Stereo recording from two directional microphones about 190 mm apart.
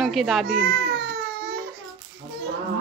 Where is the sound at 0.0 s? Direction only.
Centre (ahead or behind).